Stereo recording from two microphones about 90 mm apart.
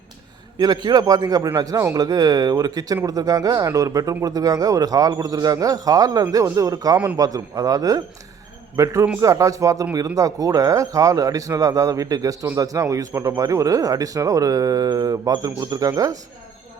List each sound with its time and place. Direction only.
0.6 s a man's voice: 50° right (ahead or behind)